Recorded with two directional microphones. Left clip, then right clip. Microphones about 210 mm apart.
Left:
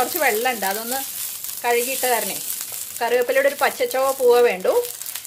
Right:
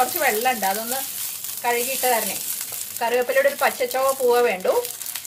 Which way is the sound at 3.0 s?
50° left (ahead or behind).